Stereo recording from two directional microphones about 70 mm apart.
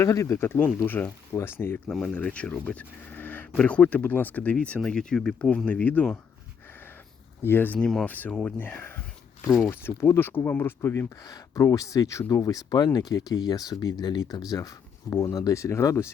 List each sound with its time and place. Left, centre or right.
0.0 s speech: left
2.1 s speech: centre
5.6 s speech: left
7.4 s speech: left
7.8 s speech: centre
8.0 s speech: left
8.3 s speech: centre
8.5 s speech: left
11.2 s speech: left
12.7 s speech: left